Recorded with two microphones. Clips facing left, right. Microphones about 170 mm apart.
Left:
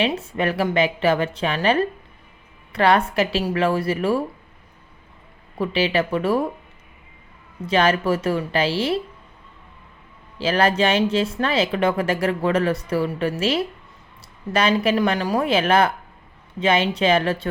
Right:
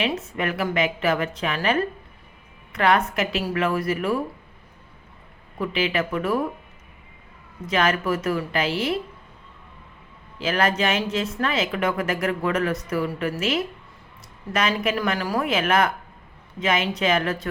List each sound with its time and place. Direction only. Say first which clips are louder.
0.0 s a woman's voice: left 3 dB; 30° left (ahead or behind)
5.5 s speech: left 3 dB; 30° left (ahead or behind)
7.7 s speech: left 3 dB; 30° left (ahead or behind)
10.3 s a woman's voice: left 3 dB; 30° left (ahead or behind)